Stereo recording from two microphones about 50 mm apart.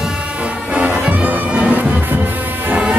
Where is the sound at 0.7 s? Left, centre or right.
Right.